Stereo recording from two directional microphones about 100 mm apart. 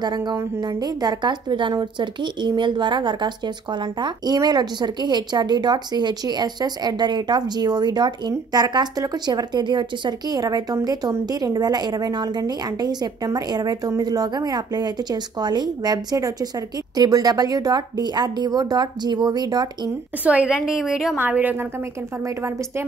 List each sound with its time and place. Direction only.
0.0 s a woman's voice: 45° right (ahead or behind)
20.2 s a woman's voice: 10° right (ahead or behind)
21.2 s a woman's voice: 15° right (ahead or behind)
22.2 s a woman's voice: 30° right (ahead or behind)